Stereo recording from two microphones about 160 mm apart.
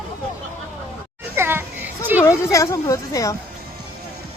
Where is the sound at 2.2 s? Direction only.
20° left (ahead or behind).